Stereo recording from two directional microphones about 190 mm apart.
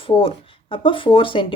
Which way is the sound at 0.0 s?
30° left (ahead or behind).